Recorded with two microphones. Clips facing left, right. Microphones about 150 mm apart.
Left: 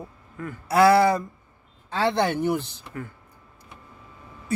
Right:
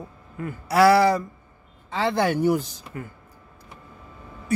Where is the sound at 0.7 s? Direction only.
25° left (ahead or behind).